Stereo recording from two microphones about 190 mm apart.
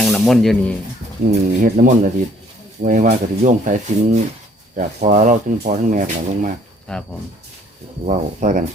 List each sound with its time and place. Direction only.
0.0 s snake: centre (ahead or behind)
1.3 s speech: 45° right (ahead or behind)
6.9 s speech: 5° left (ahead or behind)
8.0 s speech: 40° right (ahead or behind)